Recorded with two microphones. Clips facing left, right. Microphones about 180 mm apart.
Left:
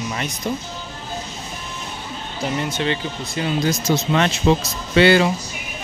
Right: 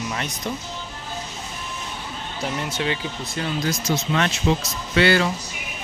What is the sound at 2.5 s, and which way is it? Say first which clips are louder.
Speech: left 4 dB; 5° right (ahead or behind).